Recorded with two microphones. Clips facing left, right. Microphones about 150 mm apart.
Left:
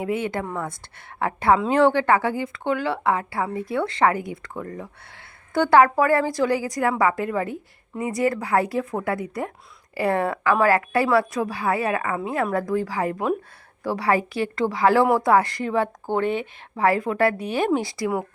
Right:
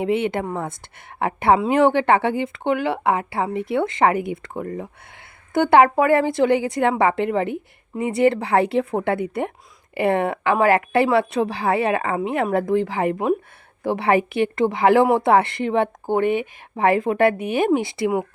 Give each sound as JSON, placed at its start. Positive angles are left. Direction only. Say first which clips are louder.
{"t": 0.0, "sound": "speech", "louder": "right 4 dB", "side_deg": -25}